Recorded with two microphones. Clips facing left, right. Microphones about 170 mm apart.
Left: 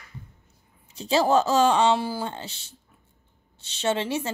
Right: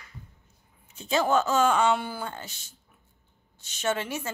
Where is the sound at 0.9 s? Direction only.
35° left (ahead or behind).